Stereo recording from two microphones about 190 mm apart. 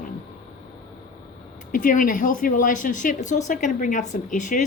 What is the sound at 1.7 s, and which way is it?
A woman's voice, 45° left (ahead or behind).